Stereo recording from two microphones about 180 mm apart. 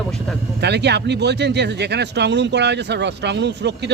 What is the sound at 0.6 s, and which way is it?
Speech, 70° right (ahead or behind).